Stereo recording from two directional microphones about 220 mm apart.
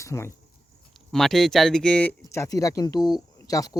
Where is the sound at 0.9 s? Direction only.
Centre (ahead or behind).